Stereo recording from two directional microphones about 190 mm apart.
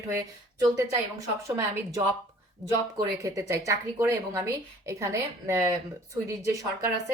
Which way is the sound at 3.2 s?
15° right (ahead or behind).